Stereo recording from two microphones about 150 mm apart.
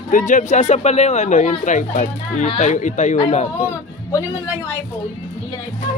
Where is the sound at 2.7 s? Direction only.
55° left (ahead or behind).